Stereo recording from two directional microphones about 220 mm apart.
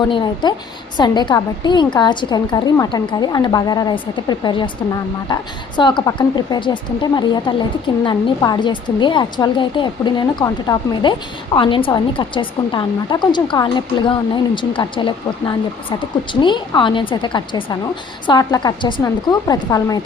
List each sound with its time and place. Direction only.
0.0 s a woman's voice: 20° left (ahead or behind)